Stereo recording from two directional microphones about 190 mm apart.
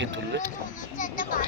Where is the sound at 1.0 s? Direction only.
45° left (ahead or behind).